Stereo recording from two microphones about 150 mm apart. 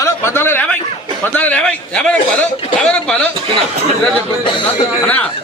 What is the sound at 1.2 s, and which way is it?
Speech, 10° left (ahead or behind).